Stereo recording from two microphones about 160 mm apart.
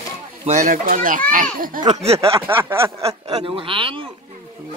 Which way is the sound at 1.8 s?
45° right (ahead or behind).